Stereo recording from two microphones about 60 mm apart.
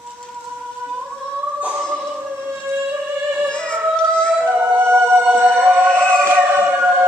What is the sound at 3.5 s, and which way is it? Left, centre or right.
Music, centre.